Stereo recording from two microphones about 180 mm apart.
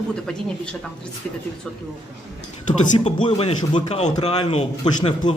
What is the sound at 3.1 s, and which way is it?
A man's voice, 30° left (ahead or behind).